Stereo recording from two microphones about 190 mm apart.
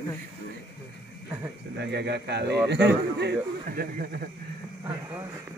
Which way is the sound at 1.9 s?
60° right (ahead or behind).